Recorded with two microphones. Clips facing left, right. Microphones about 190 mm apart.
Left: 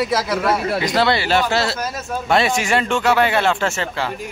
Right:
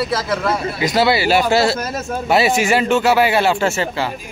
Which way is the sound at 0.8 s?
5° right (ahead or behind).